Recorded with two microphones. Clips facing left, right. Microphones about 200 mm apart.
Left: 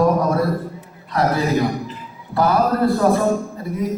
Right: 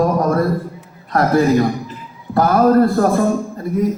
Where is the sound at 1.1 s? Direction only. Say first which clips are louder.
Right 5 dB; 50° right (ahead or behind).